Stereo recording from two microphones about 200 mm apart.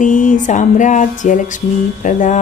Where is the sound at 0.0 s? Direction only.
40° left (ahead or behind).